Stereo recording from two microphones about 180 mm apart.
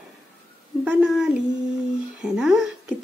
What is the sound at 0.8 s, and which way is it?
A woman's voice, 5° right (ahead or behind).